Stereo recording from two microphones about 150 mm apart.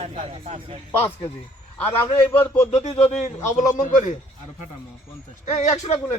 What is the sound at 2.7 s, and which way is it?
A man's voice, 45° left (ahead or behind).